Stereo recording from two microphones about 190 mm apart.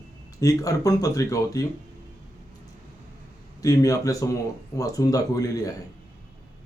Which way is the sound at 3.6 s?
15° left (ahead or behind).